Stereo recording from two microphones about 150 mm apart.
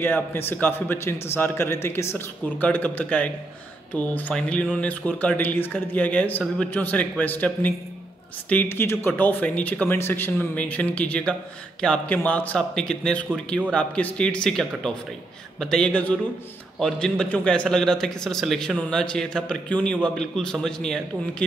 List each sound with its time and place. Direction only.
0.0 s a man's voice: 15° left (ahead or behind)